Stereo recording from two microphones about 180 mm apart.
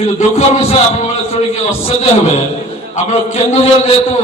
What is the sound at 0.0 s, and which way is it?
Speech, 40° left (ahead or behind).